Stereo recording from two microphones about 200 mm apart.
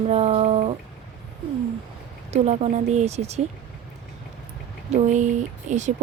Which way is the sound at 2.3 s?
35° right (ahead or behind).